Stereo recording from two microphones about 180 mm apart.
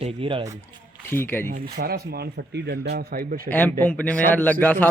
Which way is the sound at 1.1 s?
10° left (ahead or behind).